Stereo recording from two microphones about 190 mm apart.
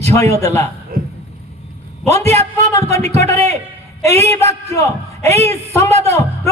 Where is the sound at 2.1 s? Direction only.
35° right (ahead or behind).